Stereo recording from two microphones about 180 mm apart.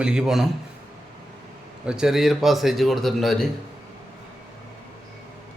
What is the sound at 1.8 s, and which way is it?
A man's voice, 5° right (ahead or behind).